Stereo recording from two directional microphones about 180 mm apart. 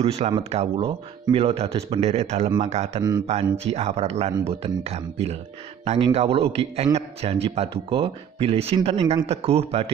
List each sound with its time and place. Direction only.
0.3 s speech: 35° right (ahead or behind)
3.0 s speech: 25° right (ahead or behind)
3.4 s speech: 35° right (ahead or behind)